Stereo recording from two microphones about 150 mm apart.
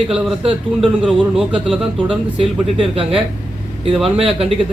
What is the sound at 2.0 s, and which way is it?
Speech, 35° right (ahead or behind).